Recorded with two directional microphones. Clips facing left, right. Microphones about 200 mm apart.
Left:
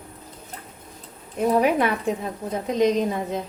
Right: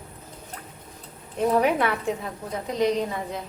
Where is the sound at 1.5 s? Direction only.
15° left (ahead or behind).